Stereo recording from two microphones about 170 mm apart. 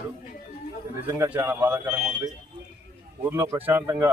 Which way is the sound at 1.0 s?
15° right (ahead or behind).